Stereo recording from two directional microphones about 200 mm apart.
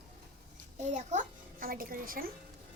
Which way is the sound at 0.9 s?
40° right (ahead or behind).